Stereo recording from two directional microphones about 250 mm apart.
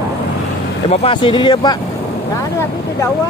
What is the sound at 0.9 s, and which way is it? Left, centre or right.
Speech, left.